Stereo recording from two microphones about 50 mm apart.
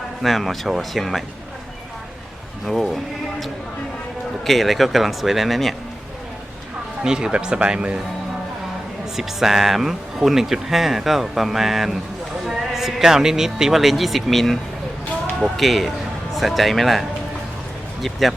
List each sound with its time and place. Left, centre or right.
0.2 s speech: centre
2.6 s speech: centre
4.4 s speech: centre
7.0 s speech: centre
9.1 s a man's voice: centre